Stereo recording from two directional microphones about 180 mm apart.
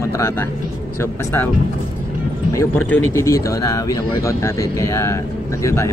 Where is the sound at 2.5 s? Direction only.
10° left (ahead or behind).